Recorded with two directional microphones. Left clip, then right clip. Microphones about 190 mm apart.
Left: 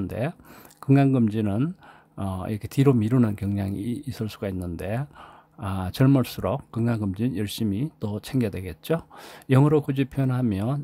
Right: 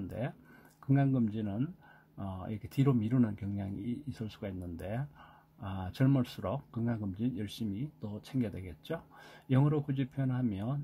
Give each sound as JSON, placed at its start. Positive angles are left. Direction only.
{"t": 0.0, "sound": "speech", "side_deg": 25}